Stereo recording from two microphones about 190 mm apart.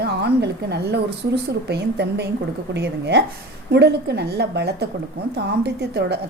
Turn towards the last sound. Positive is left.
turn(degrees=-60)  # may be behind; listen again after turning